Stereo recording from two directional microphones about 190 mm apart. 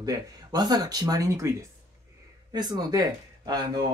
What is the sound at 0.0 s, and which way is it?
Speech, 20° right (ahead or behind).